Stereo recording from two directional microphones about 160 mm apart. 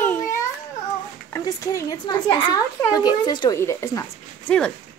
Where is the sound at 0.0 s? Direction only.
15° left (ahead or behind).